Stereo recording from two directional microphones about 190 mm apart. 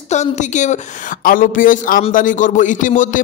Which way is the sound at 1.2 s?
45° left (ahead or behind).